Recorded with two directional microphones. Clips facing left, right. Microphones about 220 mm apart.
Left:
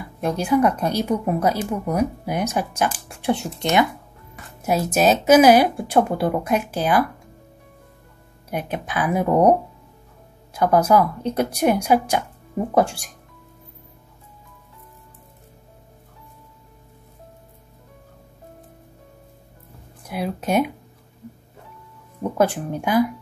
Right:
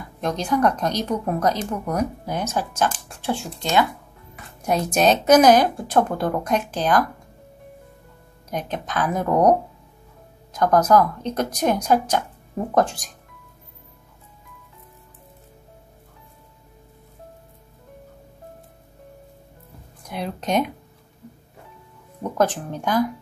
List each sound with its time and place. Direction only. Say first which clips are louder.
0.2 s speech: left 2 dB; 10° left (ahead or behind)
4.6 s speech: left 1 dB; 5° left (ahead or behind)
8.5 s speech: left 1 dB; 10° left (ahead or behind)
20.0 s speech: left 3 dB; 5° left (ahead or behind)
22.2 s speech: left 2 dB; 10° left (ahead or behind)